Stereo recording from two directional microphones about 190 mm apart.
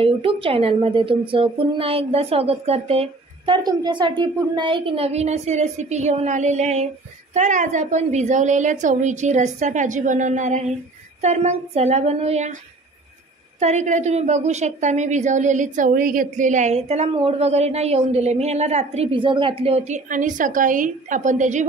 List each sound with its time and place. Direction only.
0.0 s a woman's voice: 30° right (ahead or behind)
13.6 s a woman's voice: 40° right (ahead or behind)